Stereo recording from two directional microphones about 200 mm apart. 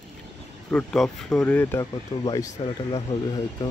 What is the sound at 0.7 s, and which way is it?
Speech, 5° left (ahead or behind).